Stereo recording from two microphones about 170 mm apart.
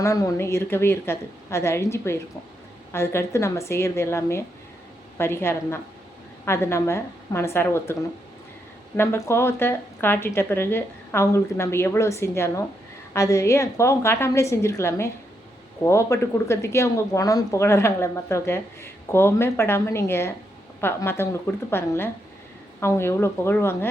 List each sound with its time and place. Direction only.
0.0 s speech: 20° left (ahead or behind)
9.0 s speech: 15° left (ahead or behind)